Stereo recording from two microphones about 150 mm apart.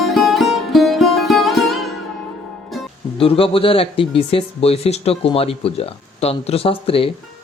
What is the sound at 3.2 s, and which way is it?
Speech, 40° left (ahead or behind).